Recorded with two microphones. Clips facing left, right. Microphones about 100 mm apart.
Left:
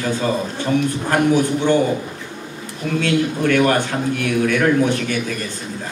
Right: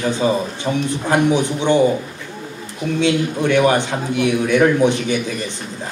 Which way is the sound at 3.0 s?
15° right (ahead or behind).